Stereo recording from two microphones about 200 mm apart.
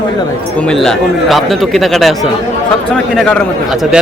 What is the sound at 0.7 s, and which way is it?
Speech, centre (ahead or behind).